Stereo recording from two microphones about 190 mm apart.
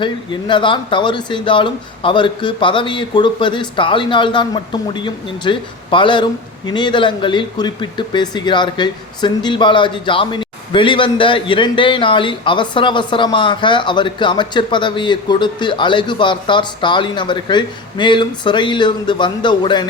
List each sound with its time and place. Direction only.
0.0 s speech: 25° left (ahead or behind)